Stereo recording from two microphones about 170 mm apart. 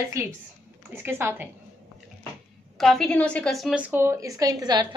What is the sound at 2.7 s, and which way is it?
A woman's voice, centre (ahead or behind).